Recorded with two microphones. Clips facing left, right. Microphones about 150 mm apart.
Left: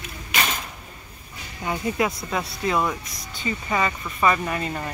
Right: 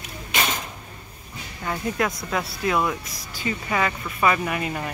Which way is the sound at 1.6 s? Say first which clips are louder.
Left 1 dB; 5° left (ahead or behind).